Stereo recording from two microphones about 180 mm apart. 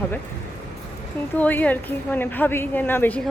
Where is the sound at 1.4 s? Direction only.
10° left (ahead or behind).